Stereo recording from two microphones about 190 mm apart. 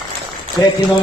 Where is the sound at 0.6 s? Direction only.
20° left (ahead or behind).